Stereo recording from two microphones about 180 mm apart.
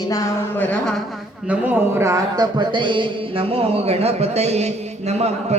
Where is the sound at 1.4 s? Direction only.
10° right (ahead or behind).